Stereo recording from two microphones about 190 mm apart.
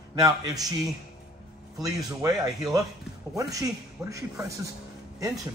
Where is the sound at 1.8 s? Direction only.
20° right (ahead or behind).